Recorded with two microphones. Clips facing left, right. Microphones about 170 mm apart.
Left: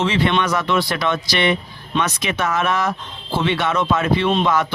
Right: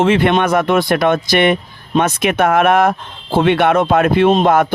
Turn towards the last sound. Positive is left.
turn(degrees=-55)  # may be behind; listen again after turning